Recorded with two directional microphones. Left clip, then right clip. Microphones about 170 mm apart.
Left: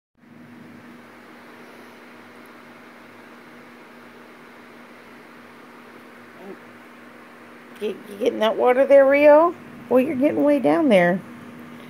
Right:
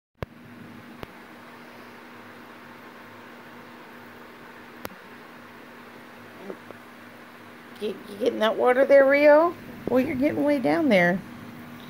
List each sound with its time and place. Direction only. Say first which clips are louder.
8.4 s speech: left 3 dB; 15° left (ahead or behind)